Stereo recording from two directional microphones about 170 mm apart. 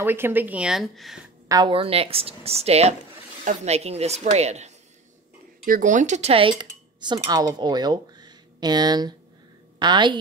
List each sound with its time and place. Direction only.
0.0 s speech: 15° right (ahead or behind)
1.5 s a woman's voice: 30° right (ahead or behind)